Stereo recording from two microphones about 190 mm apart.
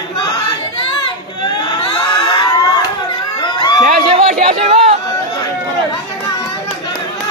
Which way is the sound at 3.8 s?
40° right (ahead or behind).